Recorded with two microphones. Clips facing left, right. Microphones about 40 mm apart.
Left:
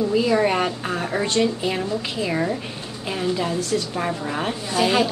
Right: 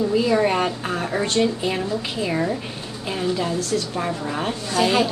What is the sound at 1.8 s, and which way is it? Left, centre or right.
A woman's voice, centre.